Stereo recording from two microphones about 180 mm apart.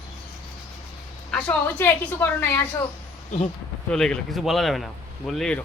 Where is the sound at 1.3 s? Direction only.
10° left (ahead or behind).